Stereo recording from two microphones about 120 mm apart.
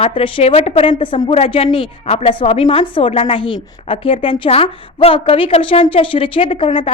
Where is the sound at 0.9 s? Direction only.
45° left (ahead or behind).